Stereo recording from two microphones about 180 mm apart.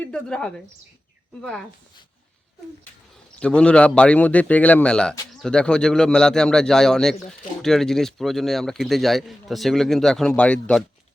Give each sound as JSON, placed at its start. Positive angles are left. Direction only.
{"t": 0.0, "sound": "a man's voice", "side_deg": 5}
{"t": 3.4, "sound": "a man's voice", "side_deg": 5}